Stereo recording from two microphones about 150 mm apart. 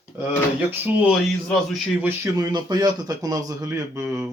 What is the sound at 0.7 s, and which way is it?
Speech, 10° right (ahead or behind).